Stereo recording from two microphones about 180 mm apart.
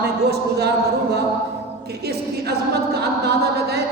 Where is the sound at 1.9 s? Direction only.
65° right (ahead or behind).